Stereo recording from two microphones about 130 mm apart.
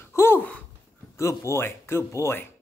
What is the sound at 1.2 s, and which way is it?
Speech, 25° left (ahead or behind).